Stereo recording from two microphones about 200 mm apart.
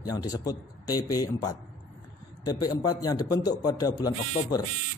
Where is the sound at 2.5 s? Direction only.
20° left (ahead or behind).